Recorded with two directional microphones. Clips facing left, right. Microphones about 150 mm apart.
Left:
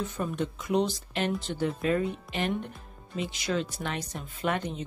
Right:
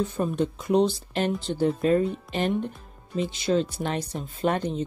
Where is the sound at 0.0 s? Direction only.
30° right (ahead or behind).